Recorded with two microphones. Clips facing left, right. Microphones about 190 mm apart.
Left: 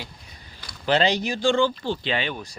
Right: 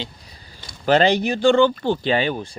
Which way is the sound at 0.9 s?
55° right (ahead or behind).